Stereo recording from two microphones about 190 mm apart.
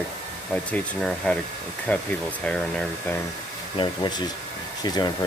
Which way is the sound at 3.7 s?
25° left (ahead or behind).